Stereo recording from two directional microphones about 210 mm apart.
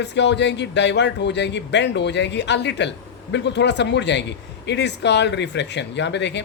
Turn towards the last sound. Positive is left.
turn(degrees=55)  # may be behind; listen again after turning